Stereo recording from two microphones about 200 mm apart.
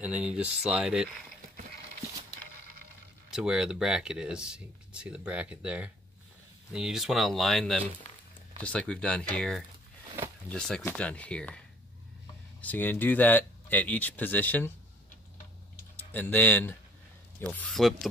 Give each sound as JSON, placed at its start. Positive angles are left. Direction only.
{"t": 0.0, "sound": "speech", "side_deg": -5}
{"t": 3.3, "sound": "speech", "side_deg": -5}
{"t": 12.6, "sound": "speech", "side_deg": 10}
{"t": 16.0, "sound": "speech", "side_deg": 10}